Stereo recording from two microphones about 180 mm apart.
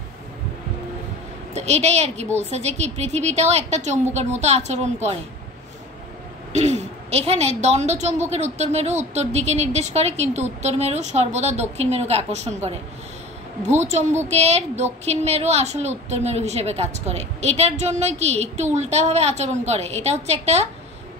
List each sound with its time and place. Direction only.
1.5 s a woman's voice: 40° right (ahead or behind)
6.5 s a woman's voice: 40° right (ahead or behind)
14.3 s a woman's voice: 40° right (ahead or behind)